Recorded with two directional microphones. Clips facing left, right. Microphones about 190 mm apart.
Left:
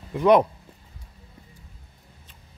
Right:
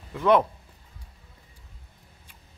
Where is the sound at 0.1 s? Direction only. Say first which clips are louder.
Left 3 dB; 15° left (ahead or behind).